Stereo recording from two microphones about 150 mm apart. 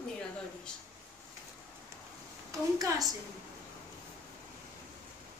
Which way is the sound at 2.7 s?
25° right (ahead or behind).